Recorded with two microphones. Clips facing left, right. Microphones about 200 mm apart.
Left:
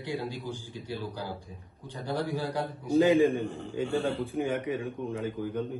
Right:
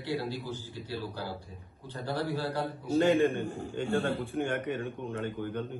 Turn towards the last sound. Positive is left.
turn(degrees=0)  # may be behind; listen again after turning